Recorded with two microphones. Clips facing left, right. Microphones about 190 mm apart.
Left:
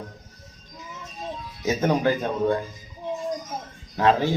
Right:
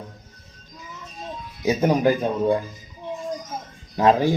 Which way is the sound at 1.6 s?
15° right (ahead or behind).